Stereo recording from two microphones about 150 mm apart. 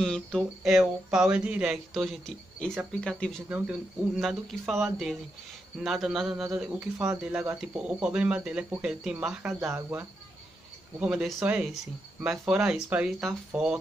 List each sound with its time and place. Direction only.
0.0 s speech: 5° left (ahead or behind)
3.4 s speech: 10° right (ahead or behind)
9.6 s speech: 15° right (ahead or behind)
11.0 s speech: 5° right (ahead or behind)